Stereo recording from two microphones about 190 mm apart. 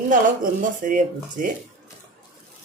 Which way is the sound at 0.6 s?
45° right (ahead or behind).